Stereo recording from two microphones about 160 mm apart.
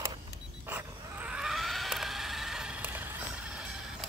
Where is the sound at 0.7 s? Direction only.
10° right (ahead or behind).